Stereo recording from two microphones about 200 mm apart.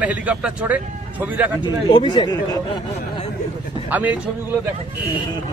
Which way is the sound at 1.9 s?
25° left (ahead or behind).